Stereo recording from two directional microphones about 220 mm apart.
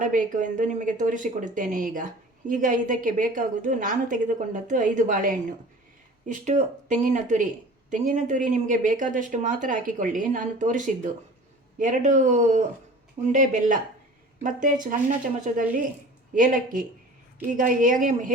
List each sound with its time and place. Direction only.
0.0 s speech: 35° right (ahead or behind)